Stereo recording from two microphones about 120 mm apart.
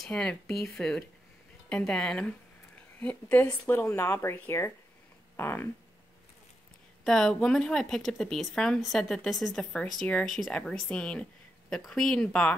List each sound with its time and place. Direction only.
0.0 s a woman's voice: 5° left (ahead or behind)
7.1 s speech: 5° left (ahead or behind)